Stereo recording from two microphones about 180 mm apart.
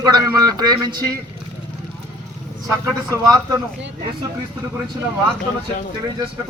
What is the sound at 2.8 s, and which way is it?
Speech, 20° right (ahead or behind).